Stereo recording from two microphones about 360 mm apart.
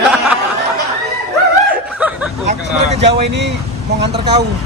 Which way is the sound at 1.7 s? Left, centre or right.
Centre.